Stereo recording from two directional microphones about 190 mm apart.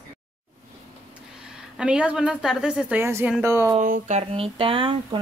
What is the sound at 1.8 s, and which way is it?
A woman's voice, 5° right (ahead or behind).